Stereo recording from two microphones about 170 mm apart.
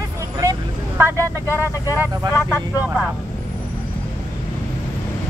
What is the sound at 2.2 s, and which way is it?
Speech, 25° right (ahead or behind).